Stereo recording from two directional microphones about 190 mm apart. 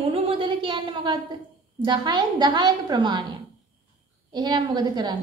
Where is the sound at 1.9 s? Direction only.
20° right (ahead or behind).